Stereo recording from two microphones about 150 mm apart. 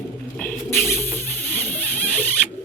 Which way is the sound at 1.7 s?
10° left (ahead or behind).